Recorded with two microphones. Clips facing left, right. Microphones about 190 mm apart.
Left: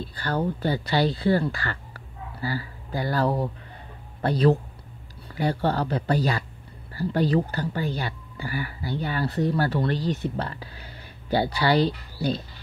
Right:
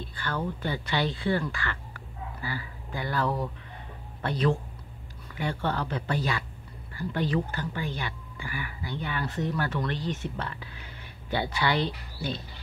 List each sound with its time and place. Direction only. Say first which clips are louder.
0.0 s speech: left 5 dB; 35° left (ahead or behind)